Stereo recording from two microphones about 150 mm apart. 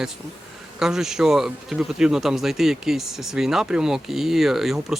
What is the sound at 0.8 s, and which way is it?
Speech, 5° right (ahead or behind).